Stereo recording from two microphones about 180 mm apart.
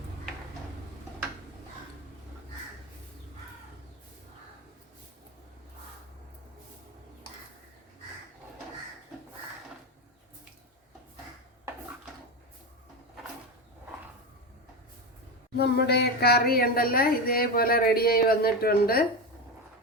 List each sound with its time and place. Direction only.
15.5 s speech: 65° left (ahead or behind)